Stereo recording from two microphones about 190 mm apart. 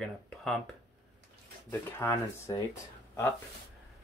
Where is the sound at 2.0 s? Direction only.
20° left (ahead or behind).